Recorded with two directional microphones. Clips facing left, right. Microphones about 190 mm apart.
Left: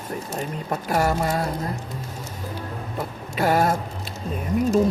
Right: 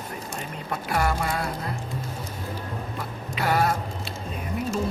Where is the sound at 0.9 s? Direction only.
40° left (ahead or behind).